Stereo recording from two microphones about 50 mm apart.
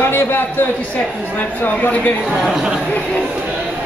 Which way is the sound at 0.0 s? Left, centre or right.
Left.